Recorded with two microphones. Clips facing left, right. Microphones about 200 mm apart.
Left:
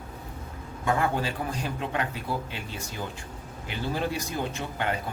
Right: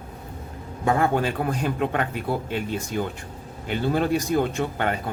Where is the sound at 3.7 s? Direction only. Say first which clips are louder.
Right 7 dB; 55° right (ahead or behind).